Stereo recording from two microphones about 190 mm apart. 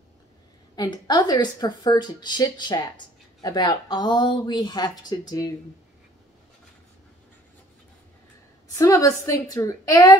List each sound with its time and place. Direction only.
0.7 s a woman's voice: 20° left (ahead or behind)
8.7 s a woman's voice: 15° left (ahead or behind)